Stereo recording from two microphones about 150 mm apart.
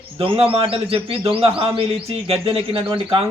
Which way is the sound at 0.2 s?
40° right (ahead or behind).